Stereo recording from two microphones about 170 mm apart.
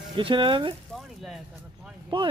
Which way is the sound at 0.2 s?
30° right (ahead or behind).